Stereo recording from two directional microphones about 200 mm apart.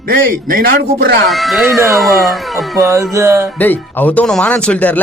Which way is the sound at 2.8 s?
15° right (ahead or behind).